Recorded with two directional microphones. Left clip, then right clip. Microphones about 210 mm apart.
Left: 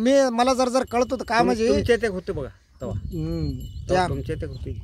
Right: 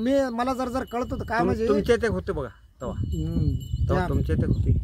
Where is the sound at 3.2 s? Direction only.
55° left (ahead or behind).